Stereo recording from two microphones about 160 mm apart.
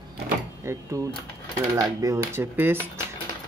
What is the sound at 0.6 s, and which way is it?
Cutlery, 20° right (ahead or behind).